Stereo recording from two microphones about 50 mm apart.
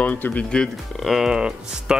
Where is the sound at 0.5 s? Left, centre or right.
Centre.